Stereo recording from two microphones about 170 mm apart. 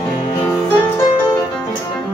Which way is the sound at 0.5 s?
15° left (ahead or behind).